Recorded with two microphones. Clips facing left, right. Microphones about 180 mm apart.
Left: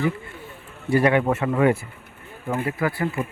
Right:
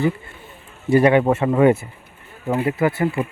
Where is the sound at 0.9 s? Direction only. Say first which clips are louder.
Right 4 dB; 20° right (ahead or behind).